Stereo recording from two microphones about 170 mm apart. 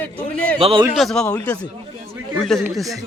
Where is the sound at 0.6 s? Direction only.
35° right (ahead or behind).